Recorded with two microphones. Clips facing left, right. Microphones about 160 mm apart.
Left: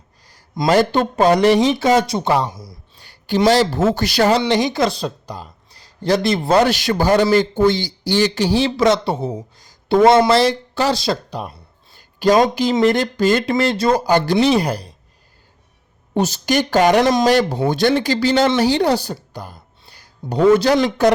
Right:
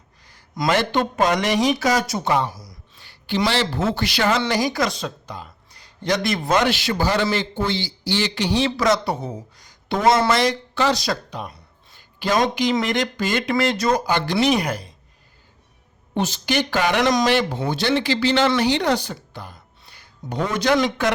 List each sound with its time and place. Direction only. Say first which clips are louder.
0.7 s speech: left 5 dB; 35° left (ahead or behind)
2.5 s a sound: left 3 dB; 25° left (ahead or behind)
3.0 s speech: left 6 dB; 45° left (ahead or behind)
4.4 s speech: left 4 dB; 25° left (ahead or behind)
9.6 s a sound: left 6 dB; 30° left (ahead or behind)
10.2 s speech: left 5 dB; 30° left (ahead or behind)
16.1 s a woman's voice: left 4 dB; 40° left (ahead or behind)